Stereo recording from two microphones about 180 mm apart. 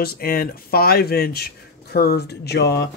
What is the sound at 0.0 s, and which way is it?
Speech, 55° left (ahead or behind).